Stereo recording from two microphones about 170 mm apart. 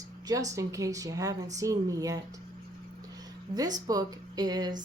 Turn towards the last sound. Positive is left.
turn(degrees=-25)  # may be behind; listen again after turning